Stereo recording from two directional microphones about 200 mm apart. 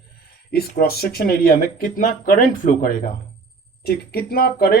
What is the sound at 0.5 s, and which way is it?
Speech, 50° left (ahead or behind).